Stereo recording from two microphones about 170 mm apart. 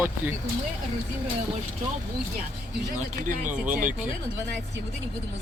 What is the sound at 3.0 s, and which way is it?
Speech, 50° right (ahead or behind).